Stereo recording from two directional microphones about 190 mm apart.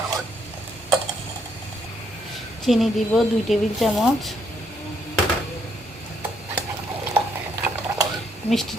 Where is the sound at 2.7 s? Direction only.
Centre (ahead or behind).